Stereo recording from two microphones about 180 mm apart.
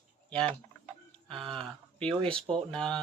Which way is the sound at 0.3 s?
5° left (ahead or behind).